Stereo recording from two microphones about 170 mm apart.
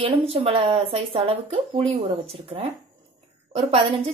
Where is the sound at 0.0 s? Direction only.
35° right (ahead or behind).